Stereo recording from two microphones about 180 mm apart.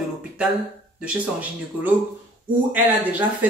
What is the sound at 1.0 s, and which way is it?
Speech, 5° right (ahead or behind).